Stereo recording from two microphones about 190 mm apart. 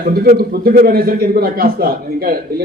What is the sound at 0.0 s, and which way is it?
A man's voice, 55° right (ahead or behind).